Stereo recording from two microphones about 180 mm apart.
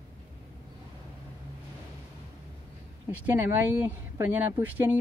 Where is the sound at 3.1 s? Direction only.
10° right (ahead or behind).